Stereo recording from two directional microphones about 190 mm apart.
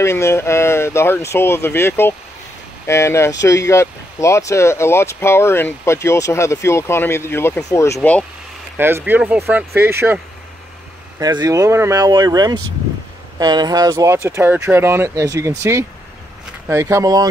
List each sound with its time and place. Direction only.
0.0 s speech: 15° left (ahead or behind)
8.7 s speech: 10° right (ahead or behind)